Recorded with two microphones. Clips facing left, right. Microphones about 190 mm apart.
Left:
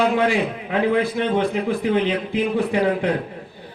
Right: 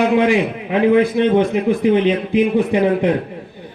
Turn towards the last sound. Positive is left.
turn(degrees=-20)  # may be behind; listen again after turning